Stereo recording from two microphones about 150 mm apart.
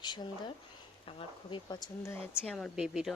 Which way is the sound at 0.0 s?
30° left (ahead or behind).